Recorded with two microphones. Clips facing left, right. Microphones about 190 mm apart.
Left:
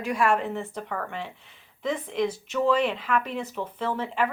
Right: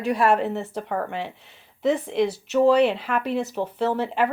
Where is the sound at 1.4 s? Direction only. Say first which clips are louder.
Right 8 dB; 75° right (ahead or behind).